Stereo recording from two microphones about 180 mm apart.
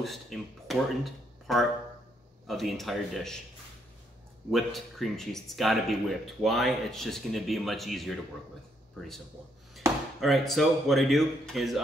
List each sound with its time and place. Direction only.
0.0 s speech: centre (ahead or behind)
4.5 s speech: centre (ahead or behind)
9.8 s chop: 15° right (ahead or behind)
10.2 s speech: centre (ahead or behind)